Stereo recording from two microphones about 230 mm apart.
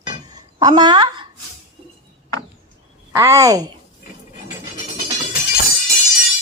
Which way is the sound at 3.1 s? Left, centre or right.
Centre.